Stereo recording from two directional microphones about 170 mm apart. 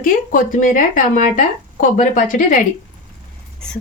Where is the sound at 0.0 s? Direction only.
55° left (ahead or behind).